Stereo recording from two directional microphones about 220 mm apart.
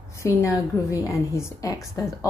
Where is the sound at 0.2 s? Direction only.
15° left (ahead or behind).